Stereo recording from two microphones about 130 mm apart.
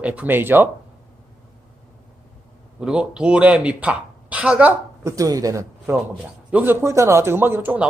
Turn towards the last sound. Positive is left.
turn(degrees=-15)  # may be behind; listen again after turning